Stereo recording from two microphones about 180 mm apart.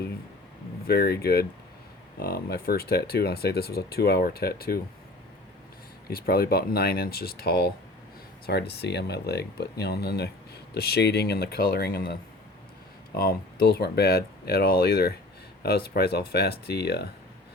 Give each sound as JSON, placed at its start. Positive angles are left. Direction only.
{"t": 0.9, "sound": "speech", "side_deg": 60}
{"t": 6.1, "sound": "speech", "side_deg": 60}
{"t": 13.1, "sound": "speech", "side_deg": 55}